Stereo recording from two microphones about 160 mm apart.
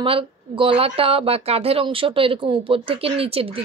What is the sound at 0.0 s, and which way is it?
A woman's voice, 35° right (ahead or behind).